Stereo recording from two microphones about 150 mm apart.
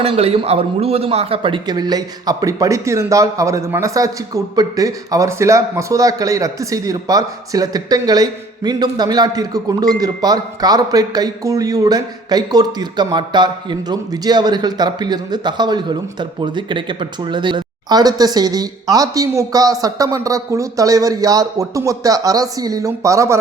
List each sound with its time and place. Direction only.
0.0 s speech: 40° right (ahead or behind); by 23.4 s 20° right (ahead or behind)